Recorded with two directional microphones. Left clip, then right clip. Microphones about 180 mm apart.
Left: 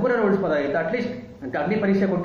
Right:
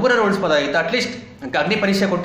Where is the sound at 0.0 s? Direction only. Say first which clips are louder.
Right 4 dB; 15° right (ahead or behind).